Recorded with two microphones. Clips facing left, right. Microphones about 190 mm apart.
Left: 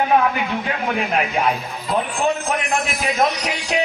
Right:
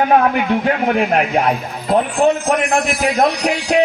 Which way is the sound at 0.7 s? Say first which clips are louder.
Right 7 dB; 50° right (ahead or behind).